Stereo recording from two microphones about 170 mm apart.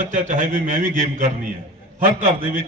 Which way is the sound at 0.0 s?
50° right (ahead or behind).